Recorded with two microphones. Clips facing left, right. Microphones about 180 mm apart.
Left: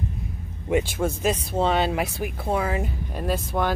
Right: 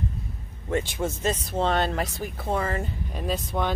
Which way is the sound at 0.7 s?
15° left (ahead or behind).